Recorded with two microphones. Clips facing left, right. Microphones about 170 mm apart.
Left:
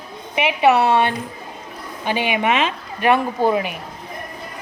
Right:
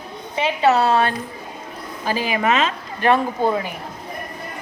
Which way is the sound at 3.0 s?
5° left (ahead or behind).